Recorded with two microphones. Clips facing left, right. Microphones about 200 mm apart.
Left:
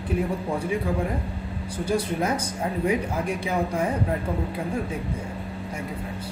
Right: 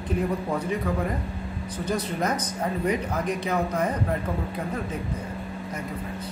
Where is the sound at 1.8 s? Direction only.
10° left (ahead or behind).